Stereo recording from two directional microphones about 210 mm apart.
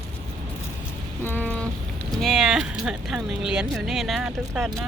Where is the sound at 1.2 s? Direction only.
10° left (ahead or behind).